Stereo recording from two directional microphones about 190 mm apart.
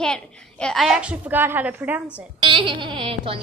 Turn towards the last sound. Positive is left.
turn(degrees=-30)  # may be behind; listen again after turning